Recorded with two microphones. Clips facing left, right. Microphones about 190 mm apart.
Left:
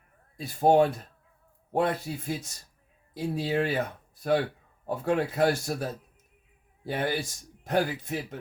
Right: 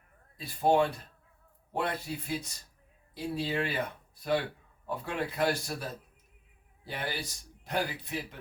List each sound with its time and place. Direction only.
0.3 s speech: 45° left (ahead or behind)